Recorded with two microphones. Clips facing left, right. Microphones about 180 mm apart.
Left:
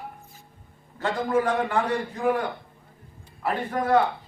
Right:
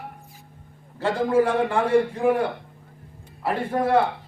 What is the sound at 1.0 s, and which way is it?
A man's voice, 30° right (ahead or behind).